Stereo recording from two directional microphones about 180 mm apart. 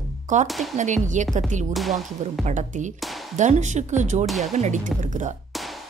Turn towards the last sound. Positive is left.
turn(degrees=-45)  # may be behind; listen again after turning